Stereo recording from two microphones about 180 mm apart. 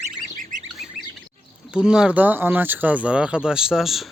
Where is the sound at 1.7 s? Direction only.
5° right (ahead or behind).